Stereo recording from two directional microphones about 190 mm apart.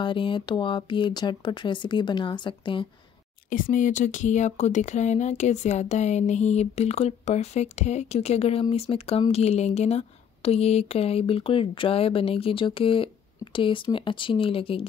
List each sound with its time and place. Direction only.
0.0 s speech: 25° left (ahead or behind)
3.4 s speech: 45° left (ahead or behind); by 14.9 s 30° left (ahead or behind)